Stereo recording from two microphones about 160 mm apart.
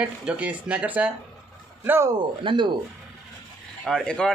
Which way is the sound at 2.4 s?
30° right (ahead or behind).